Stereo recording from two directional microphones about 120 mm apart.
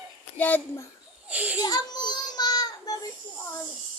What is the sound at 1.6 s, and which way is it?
Child singing, 35° left (ahead or behind).